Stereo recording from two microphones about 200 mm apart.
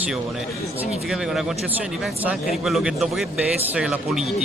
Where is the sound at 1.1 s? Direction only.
5° right (ahead or behind).